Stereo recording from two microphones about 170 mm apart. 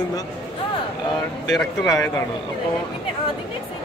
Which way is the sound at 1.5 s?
5° left (ahead or behind).